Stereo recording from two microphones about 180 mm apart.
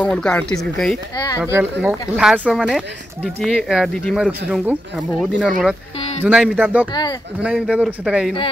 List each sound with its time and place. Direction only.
0.0 s speech: 5° left (ahead or behind)
1.1 s speech: 20° left (ahead or behind)
1.4 s speech: 10° right (ahead or behind)
5.9 s a sound: 35° left (ahead or behind)
6.2 s speech: 10° right (ahead or behind)
6.9 s speech: 20° left (ahead or behind)
7.4 s speech: 5° right (ahead or behind)